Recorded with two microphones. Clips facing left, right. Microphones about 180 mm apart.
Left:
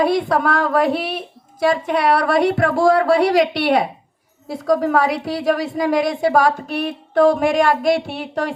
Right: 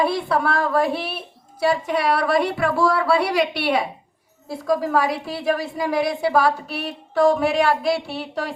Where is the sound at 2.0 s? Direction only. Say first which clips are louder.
Left 5 dB; 55° left (ahead or behind).